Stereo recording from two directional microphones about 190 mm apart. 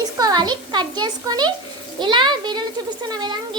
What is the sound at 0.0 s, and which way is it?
A child's voice, 20° right (ahead or behind).